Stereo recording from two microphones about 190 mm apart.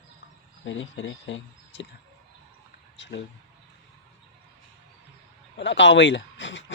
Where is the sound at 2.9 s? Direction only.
70° left (ahead or behind).